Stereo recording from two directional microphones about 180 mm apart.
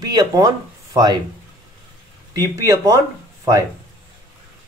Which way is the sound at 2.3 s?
20° right (ahead or behind).